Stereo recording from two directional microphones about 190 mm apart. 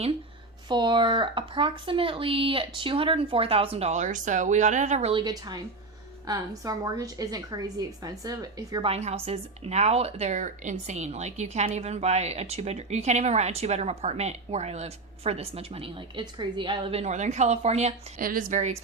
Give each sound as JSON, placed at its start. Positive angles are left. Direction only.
{"t": 0.7, "sound": "speech", "side_deg": -25}
{"t": 5.2, "sound": "speech", "side_deg": -20}
{"t": 8.9, "sound": "speech", "side_deg": -35}
{"t": 18.2, "sound": "speech", "side_deg": -45}